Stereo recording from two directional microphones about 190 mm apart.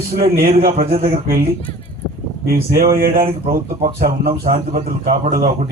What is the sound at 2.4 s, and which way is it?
Speech, 50° right (ahead or behind).